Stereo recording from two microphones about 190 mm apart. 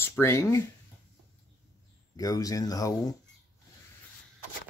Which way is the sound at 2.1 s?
20° left (ahead or behind).